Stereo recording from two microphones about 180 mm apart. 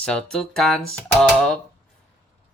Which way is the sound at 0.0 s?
5° left (ahead or behind).